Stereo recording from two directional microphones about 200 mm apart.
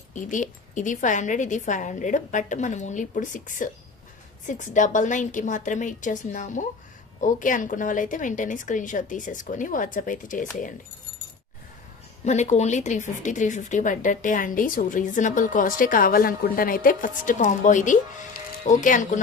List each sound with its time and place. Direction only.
0.1 s speech: 40° left (ahead or behind)
12.2 s speech: 35° left (ahead or behind)